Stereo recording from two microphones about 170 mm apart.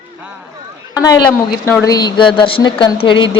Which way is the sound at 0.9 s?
20° left (ahead or behind).